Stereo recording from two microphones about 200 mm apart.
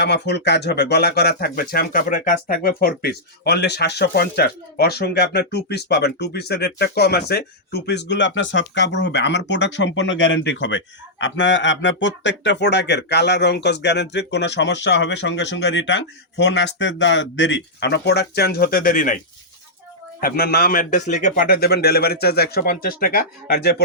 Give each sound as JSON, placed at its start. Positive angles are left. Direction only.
{"t": 0.0, "sound": "speech", "side_deg": 60}
{"t": 20.2, "sound": "a man's voice", "side_deg": 50}